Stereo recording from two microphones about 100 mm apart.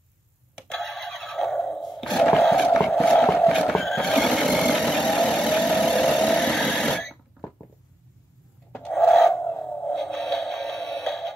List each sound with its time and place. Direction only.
0.7 s neigh: 5° left (ahead or behind)
2.4 s music: 5° left (ahead or behind)
8.8 s a sound: 5° left (ahead or behind)